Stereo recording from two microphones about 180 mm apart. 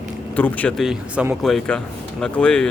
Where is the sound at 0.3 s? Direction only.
10° left (ahead or behind).